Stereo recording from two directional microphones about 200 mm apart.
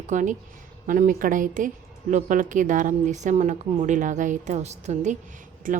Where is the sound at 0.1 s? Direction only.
40° right (ahead or behind).